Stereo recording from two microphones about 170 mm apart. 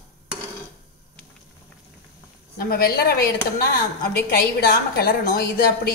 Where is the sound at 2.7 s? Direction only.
65° left (ahead or behind).